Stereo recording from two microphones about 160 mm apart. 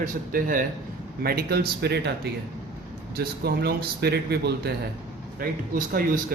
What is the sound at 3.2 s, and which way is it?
Speech, 75° right (ahead or behind).